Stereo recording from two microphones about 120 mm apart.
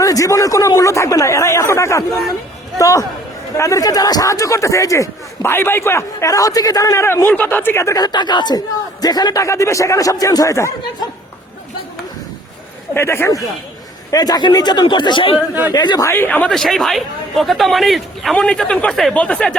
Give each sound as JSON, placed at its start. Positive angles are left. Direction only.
{"t": 0.0, "sound": "speech", "side_deg": 25}
{"t": 12.9, "sound": "speech", "side_deg": 20}
{"t": 14.1, "sound": "a man's voice", "side_deg": 35}
{"t": 15.4, "sound": "a man's voice", "side_deg": -15}
{"t": 15.7, "sound": "a man's voice", "side_deg": 35}
{"t": 16.0, "sound": "speech", "side_deg": 15}